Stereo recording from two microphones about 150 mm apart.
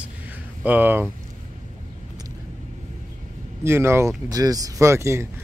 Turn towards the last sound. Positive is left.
turn(degrees=-20)  # may be behind; listen again after turning